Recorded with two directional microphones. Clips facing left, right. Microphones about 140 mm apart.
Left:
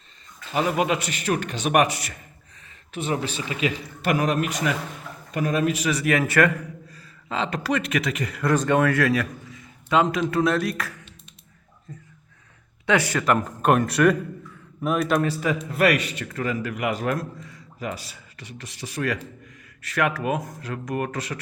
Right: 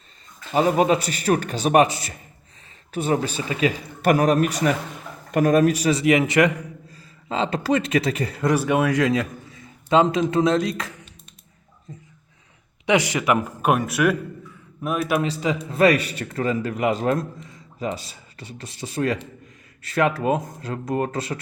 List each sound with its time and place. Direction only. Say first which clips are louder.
0.5 s a man's voice: right 5 dB; 35° right (ahead or behind)
2.6 s a man's voice: right 5 dB; 40° right (ahead or behind)
6.0 s a man's voice: right 2 dB; 20° right (ahead or behind)
8.4 s a man's voice: even; 10° right (ahead or behind)
12.8 s a man's voice: right 2 dB; 15° right (ahead or behind)
15.2 s a man's voice: even; 20° right (ahead or behind)